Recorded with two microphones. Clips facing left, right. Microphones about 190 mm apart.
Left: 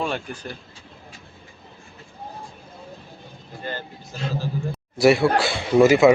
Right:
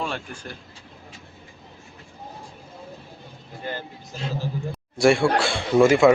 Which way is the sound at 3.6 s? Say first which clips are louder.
Even; 15° right (ahead or behind).